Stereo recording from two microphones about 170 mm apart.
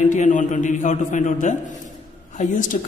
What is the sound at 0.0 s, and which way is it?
A man's voice, 45° left (ahead or behind).